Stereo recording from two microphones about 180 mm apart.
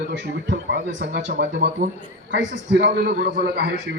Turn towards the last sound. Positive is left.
turn(degrees=-65)  # may be behind; listen again after turning